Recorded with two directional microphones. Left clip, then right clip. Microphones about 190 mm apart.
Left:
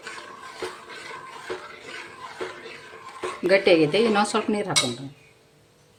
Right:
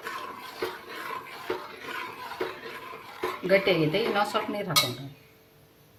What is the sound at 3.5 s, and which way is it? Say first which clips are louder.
Speech: left 5 dB; 45° left (ahead or behind).